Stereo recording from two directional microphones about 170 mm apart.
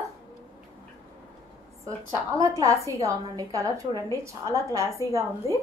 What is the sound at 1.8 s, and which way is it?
A woman's voice, 20° right (ahead or behind).